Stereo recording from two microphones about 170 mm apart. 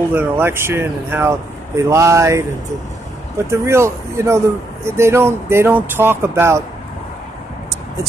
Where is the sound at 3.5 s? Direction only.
15° right (ahead or behind).